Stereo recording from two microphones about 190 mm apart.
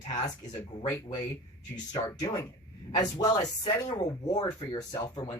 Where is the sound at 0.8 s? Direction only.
25° left (ahead or behind).